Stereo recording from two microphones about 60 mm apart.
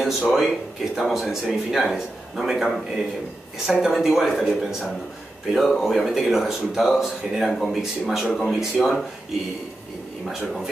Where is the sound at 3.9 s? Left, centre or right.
Centre.